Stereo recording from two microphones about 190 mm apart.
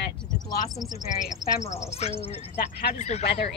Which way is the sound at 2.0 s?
35° left (ahead or behind).